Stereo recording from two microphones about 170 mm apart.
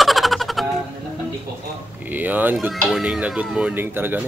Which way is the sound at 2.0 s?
10° right (ahead or behind).